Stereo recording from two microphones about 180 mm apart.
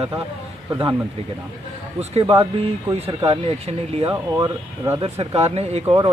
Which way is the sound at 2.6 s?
35° right (ahead or behind).